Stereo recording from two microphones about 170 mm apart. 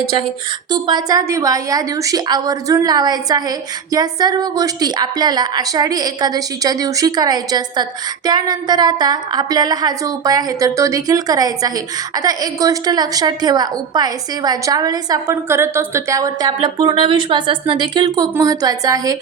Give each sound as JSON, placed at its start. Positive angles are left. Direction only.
{"t": 0.7, "sound": "a woman's voice", "side_deg": -25}